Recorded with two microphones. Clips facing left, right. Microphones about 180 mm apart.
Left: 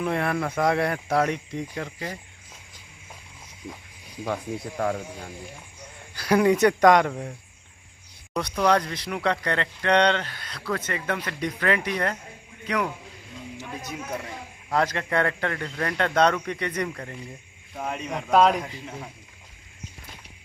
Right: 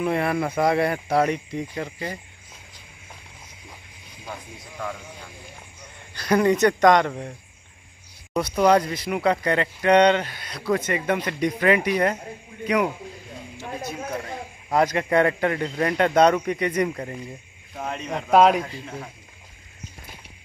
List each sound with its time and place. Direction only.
0.0 s speech: 5° right (ahead or behind)
4.2 s speech: 70° left (ahead or behind)
4.8 s speech: 45° left (ahead or behind)
6.1 s speech: 5° left (ahead or behind)
8.3 s speech: 5° right (ahead or behind)
14.7 s speech: 15° right (ahead or behind)
17.7 s speech: 5° left (ahead or behind)
18.3 s speech: 5° right (ahead or behind)
18.6 s speech: 15° left (ahead or behind)